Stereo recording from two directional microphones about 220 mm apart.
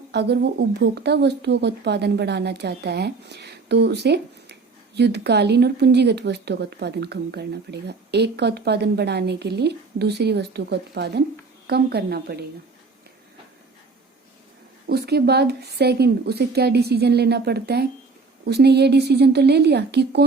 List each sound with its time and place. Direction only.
0.1 s speech: 50° right (ahead or behind)
14.8 s speech: 45° right (ahead or behind)